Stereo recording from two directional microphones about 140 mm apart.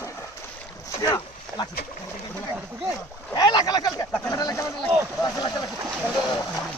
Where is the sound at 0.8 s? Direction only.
25° left (ahead or behind).